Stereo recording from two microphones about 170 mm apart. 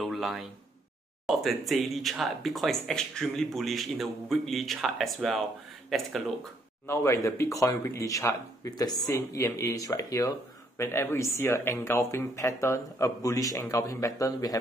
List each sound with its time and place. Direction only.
0.0 s a sound: centre (ahead or behind)
1.2 s speech: centre (ahead or behind)
6.9 s speech: 15° left (ahead or behind)